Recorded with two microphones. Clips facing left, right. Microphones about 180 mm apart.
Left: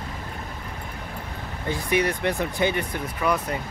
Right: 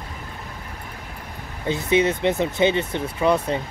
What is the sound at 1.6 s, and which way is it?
Speech, 25° right (ahead or behind).